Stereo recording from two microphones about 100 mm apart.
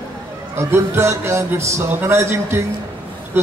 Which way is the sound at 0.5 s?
25° right (ahead or behind).